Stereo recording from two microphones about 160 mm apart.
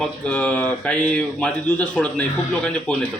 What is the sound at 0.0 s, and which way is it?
A man's voice, 5° left (ahead or behind).